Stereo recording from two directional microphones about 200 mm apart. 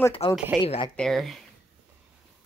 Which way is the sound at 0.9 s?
Centre (ahead or behind).